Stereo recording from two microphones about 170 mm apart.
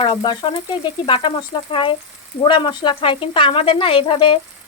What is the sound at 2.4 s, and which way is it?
Speech, 25° left (ahead or behind).